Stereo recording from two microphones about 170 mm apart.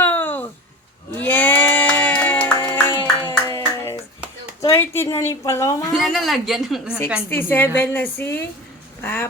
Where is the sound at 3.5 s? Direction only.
15° left (ahead or behind).